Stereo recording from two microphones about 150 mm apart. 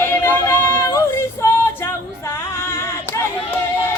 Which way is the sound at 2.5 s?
20° left (ahead or behind).